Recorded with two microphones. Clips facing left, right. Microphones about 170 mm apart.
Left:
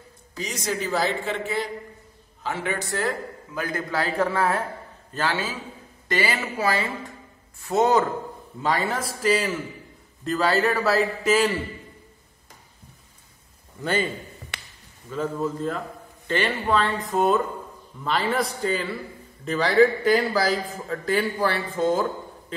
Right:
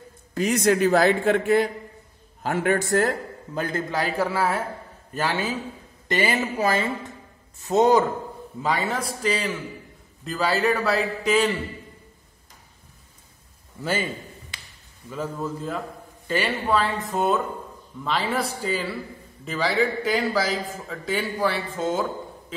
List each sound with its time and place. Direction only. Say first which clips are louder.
0.3 s a man's voice: right 9 dB; 55° right (ahead or behind)
3.5 s speech: right 1 dB; 25° right (ahead or behind)
4.0 s speech: left 1 dB; 5° right (ahead or behind)
8.6 s a man's voice: even; centre (ahead or behind)
14.5 s a sound: left 4 dB; 70° left (ahead or behind)
15.0 s a man's voice: left 3 dB; 5° right (ahead or behind)